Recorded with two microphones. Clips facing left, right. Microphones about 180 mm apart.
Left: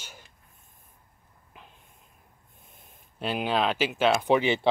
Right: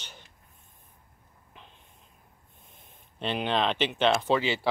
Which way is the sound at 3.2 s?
5° left (ahead or behind).